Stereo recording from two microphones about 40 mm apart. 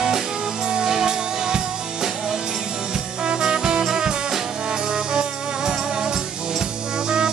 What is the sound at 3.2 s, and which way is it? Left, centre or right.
Music, centre.